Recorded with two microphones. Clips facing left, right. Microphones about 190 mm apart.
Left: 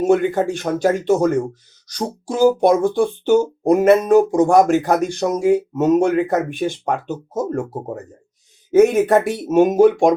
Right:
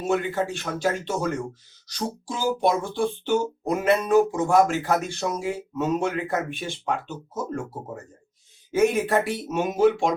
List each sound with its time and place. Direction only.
0.0 s speech: 50° left (ahead or behind)
8.8 s speech: 50° left (ahead or behind)